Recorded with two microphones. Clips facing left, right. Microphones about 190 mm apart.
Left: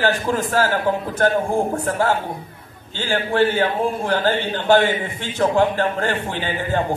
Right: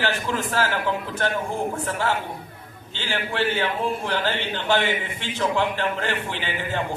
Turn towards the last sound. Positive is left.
turn(degrees=40)  # may be behind; listen again after turning